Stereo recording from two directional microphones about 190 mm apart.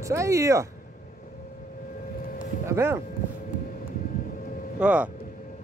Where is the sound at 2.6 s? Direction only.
15° right (ahead or behind).